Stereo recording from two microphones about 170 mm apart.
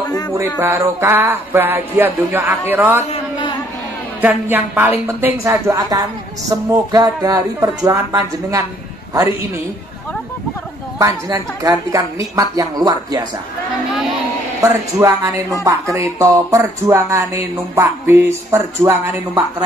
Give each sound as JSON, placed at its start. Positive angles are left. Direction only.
{"t": 0.6, "sound": "speech", "side_deg": -15}
{"t": 3.0, "sound": "a sound", "side_deg": 30}
{"t": 4.2, "sound": "a woman's voice", "side_deg": -10}
{"t": 11.0, "sound": "a woman's voice", "side_deg": -20}
{"t": 14.6, "sound": "speech", "side_deg": -15}